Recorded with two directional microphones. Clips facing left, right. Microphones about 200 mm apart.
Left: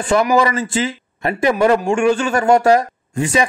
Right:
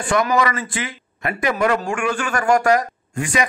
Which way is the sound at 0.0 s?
25° left (ahead or behind).